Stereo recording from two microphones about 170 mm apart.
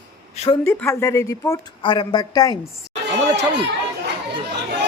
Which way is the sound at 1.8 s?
30° left (ahead or behind).